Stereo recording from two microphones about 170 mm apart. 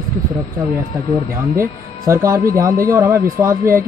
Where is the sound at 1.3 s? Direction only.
15° right (ahead or behind).